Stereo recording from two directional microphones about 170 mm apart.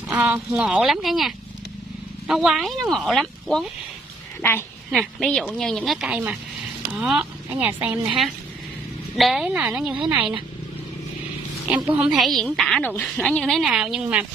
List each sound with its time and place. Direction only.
0.1 s a woman's voice: 10° right (ahead or behind)
4.4 s a woman's voice: 15° left (ahead or behind)
4.9 s a woman's voice: centre (ahead or behind)
9.1 s a woman's voice: centre (ahead or behind)
11.6 s a woman's voice: 10° right (ahead or behind)